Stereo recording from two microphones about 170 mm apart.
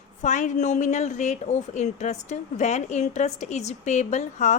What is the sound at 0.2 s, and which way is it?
Speech, 45° left (ahead or behind).